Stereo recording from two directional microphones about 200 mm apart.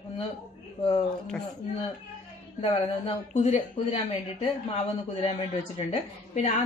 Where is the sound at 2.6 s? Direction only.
30° left (ahead or behind).